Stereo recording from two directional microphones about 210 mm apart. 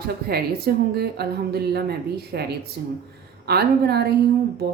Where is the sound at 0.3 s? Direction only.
50° right (ahead or behind).